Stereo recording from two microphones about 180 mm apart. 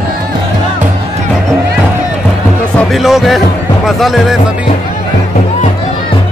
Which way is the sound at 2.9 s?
Centre (ahead or behind).